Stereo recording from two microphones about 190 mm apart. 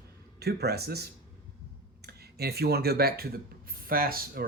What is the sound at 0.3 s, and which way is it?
Speech, 60° right (ahead or behind).